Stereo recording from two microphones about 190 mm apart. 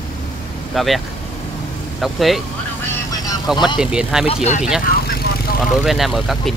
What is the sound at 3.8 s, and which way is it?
Speech, 5° right (ahead or behind).